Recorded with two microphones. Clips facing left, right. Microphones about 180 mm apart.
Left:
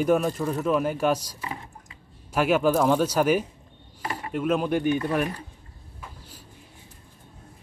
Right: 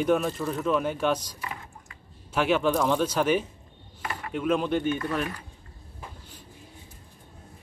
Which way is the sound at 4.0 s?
30° left (ahead or behind).